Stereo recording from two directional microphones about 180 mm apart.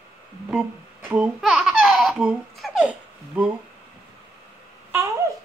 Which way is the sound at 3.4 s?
10° right (ahead or behind).